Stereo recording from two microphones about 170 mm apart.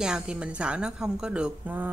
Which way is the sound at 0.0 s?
5° right (ahead or behind).